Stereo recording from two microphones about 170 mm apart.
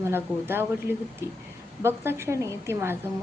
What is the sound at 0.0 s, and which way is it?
A woman's voice, 15° right (ahead or behind).